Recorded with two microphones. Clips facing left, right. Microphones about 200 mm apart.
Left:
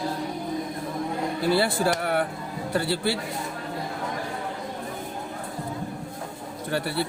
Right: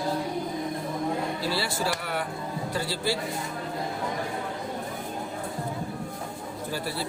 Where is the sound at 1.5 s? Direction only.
55° left (ahead or behind).